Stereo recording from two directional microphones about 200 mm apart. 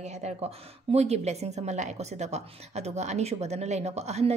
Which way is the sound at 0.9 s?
30° right (ahead or behind).